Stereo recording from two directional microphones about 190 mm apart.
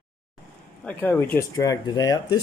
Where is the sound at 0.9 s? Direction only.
10° left (ahead or behind).